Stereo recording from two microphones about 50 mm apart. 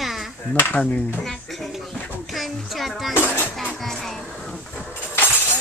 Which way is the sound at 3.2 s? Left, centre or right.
Left.